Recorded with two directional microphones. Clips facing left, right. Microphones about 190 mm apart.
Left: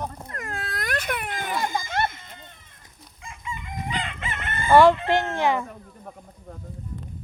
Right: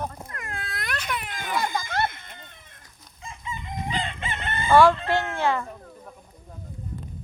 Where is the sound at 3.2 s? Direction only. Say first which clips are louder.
Even; 25° right (ahead or behind).